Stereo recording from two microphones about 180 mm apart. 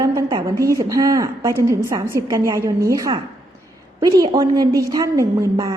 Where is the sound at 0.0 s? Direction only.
25° right (ahead or behind).